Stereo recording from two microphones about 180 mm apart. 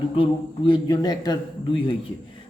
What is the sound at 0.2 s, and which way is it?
A man's voice, 30° left (ahead or behind).